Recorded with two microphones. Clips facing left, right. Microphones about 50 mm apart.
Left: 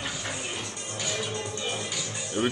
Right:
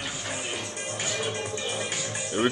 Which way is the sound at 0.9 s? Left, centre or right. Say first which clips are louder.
Right 1 dB; right.